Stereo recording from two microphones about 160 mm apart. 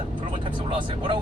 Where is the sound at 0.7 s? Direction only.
30° right (ahead or behind).